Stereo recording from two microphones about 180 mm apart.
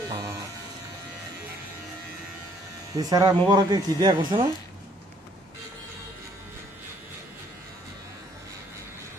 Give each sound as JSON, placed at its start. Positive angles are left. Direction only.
{"t": 0.1, "sound": "electric shaver", "side_deg": -20}
{"t": 2.9, "sound": "a man's voice", "side_deg": -20}